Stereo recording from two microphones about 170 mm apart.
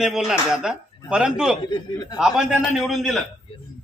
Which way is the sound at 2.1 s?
5° right (ahead or behind).